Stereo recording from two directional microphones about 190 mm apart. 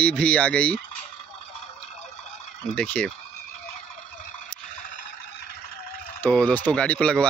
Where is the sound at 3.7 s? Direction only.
35° left (ahead or behind).